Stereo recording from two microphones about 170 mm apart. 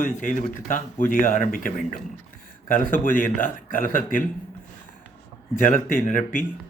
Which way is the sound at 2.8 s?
50° left (ahead or behind).